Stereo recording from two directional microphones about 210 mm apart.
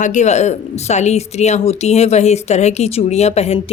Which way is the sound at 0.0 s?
35° left (ahead or behind).